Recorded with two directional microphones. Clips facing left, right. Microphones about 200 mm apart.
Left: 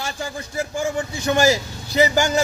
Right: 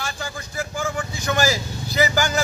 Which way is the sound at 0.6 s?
25° left (ahead or behind).